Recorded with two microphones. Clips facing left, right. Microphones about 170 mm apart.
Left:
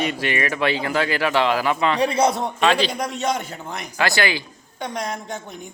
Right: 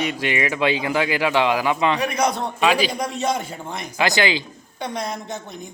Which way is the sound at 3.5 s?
15° right (ahead or behind).